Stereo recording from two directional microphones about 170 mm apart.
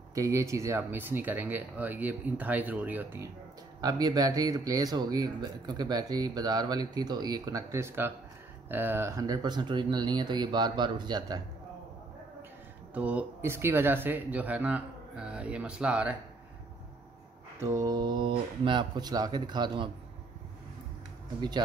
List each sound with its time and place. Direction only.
0.1 s speech: 20° right (ahead or behind)
3.8 s speech: 20° right (ahead or behind)
12.9 s speech: 10° right (ahead or behind)
17.6 s speech: 15° right (ahead or behind)
21.4 s speech: 25° right (ahead or behind)